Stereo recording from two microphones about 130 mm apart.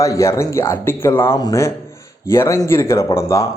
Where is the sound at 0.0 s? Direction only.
25° left (ahead or behind).